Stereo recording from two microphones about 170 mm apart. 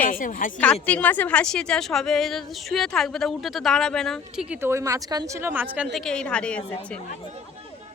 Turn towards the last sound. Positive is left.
turn(degrees=5)  # may be behind; listen again after turning